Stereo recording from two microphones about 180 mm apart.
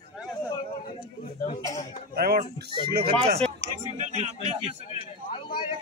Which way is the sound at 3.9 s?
40° right (ahead or behind).